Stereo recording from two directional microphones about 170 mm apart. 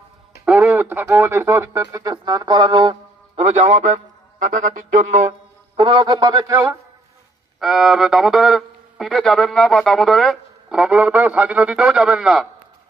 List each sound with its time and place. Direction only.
0.5 s speech: 10° right (ahead or behind); by 5.3 s 45° right (ahead or behind)
5.8 s speech: 30° right (ahead or behind)
7.6 s speech: centre (ahead or behind)